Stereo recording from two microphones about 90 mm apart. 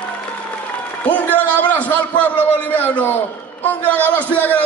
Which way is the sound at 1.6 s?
20° left (ahead or behind).